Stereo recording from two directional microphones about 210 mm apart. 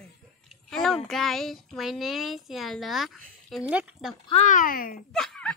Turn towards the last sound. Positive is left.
turn(degrees=5)  # may be behind; listen again after turning